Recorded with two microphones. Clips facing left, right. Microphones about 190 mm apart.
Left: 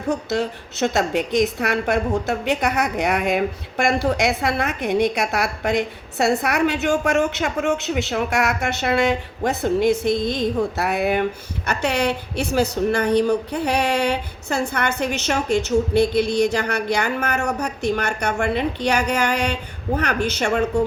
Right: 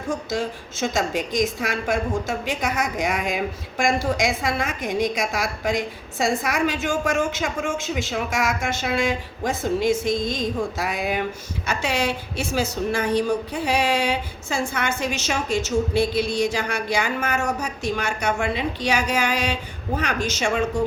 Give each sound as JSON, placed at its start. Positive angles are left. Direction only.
{"t": 0.1, "sound": "a woman's voice", "side_deg": 65}